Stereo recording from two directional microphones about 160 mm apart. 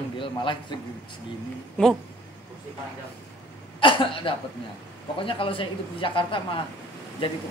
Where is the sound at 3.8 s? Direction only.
30° left (ahead or behind).